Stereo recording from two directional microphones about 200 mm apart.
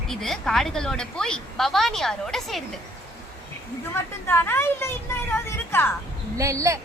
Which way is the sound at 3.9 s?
10° left (ahead or behind).